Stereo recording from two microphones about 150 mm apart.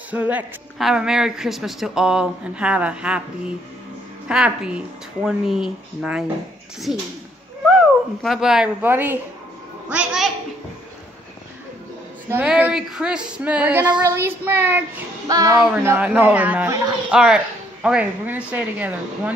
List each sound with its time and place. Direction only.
0.1 s a woman's voice: 10° right (ahead or behind)
8.2 s a woman's voice: centre (ahead or behind)
12.3 s a child's voice: 10° right (ahead or behind)
15.7 s a woman's voice: 10° right (ahead or behind)